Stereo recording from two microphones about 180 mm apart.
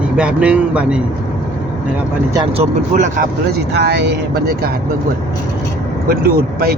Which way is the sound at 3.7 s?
70° right (ahead or behind).